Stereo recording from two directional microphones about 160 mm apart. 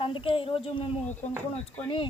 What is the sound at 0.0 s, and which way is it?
Speech, 30° left (ahead or behind).